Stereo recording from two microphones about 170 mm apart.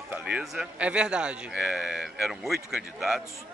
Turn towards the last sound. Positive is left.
turn(degrees=0)  # may be behind; listen again after turning